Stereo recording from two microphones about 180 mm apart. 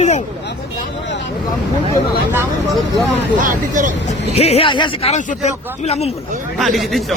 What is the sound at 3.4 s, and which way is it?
Speech, 45° right (ahead or behind).